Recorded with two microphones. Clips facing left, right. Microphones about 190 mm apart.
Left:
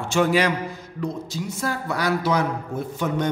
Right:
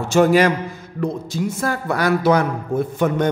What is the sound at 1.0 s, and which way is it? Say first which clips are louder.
A man's voice: right 6 dB; 55° right (ahead or behind).